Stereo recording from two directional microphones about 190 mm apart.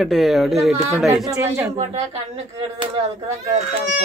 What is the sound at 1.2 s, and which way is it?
Speech, 15° right (ahead or behind).